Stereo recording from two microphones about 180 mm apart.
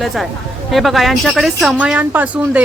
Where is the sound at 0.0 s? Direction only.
Centre (ahead or behind).